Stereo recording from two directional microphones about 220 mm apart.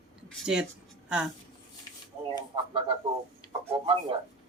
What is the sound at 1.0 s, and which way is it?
Speech, 5° right (ahead or behind).